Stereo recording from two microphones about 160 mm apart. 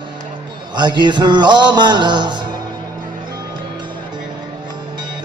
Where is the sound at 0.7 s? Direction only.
30° right (ahead or behind).